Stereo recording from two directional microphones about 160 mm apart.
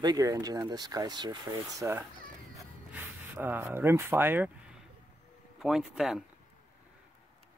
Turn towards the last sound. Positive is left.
turn(degrees=0)  # may be behind; listen again after turning